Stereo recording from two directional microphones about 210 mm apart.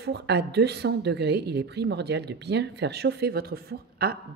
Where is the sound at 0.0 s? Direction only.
50° right (ahead or behind).